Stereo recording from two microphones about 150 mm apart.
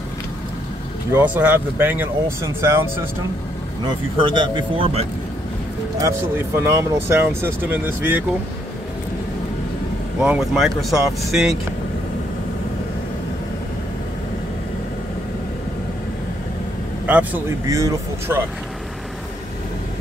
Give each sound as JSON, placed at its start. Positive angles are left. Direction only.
{"t": 1.1, "sound": "speech", "side_deg": -10}
{"t": 3.8, "sound": "speech", "side_deg": -30}
{"t": 5.9, "sound": "speech", "side_deg": -20}
{"t": 10.2, "sound": "speech", "side_deg": -5}
{"t": 17.0, "sound": "speech", "side_deg": -10}